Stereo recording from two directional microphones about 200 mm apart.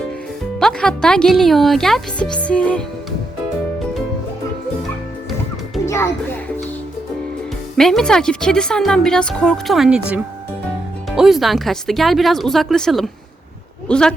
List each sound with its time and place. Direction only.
0.6 s a woman's voice: 5° left (ahead or behind)
5.8 s a child's voice: 15° left (ahead or behind)
7.8 s a woman's voice: centre (ahead or behind)